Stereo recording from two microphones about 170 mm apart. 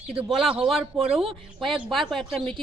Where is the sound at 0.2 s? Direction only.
Centre (ahead or behind).